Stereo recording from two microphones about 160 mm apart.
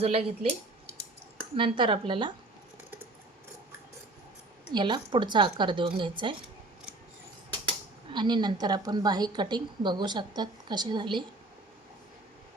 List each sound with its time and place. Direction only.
0.0 s a woman's voice: 40° right (ahead or behind)
1.5 s a woman's voice: 35° right (ahead or behind)
4.7 s a woman's voice: 30° right (ahead or behind)
7.5 s speech: 30° right (ahead or behind)